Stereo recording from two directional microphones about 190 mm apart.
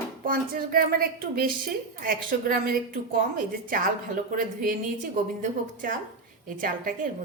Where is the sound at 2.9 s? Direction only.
50° right (ahead or behind).